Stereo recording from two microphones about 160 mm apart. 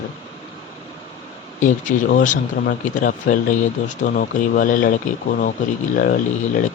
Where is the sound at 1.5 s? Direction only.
50° left (ahead or behind).